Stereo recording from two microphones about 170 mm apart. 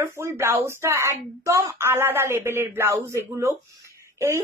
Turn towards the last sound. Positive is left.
turn(degrees=-15)  # may be behind; listen again after turning